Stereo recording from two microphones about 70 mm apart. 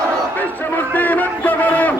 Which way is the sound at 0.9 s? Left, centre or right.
Left.